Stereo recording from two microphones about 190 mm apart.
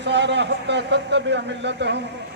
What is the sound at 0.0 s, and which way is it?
A man's voice, 65° right (ahead or behind).